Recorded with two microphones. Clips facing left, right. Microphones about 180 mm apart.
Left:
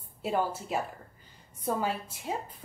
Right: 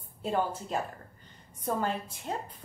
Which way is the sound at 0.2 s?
5° left (ahead or behind).